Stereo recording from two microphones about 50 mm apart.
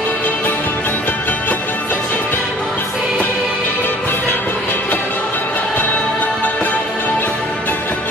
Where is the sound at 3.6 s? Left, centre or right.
Left.